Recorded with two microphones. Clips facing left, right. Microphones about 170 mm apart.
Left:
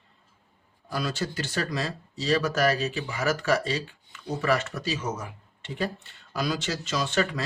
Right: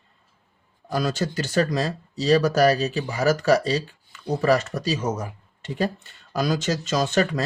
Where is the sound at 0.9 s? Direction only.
45° right (ahead or behind).